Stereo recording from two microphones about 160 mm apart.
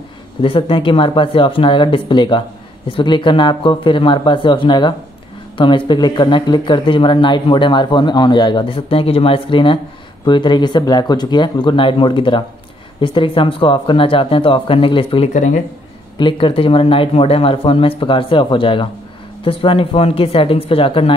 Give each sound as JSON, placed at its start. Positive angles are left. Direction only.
{"t": 0.4, "sound": "speech", "side_deg": 35}
{"t": 15.3, "sound": "speech", "side_deg": 50}
{"t": 16.2, "sound": "speech", "side_deg": 30}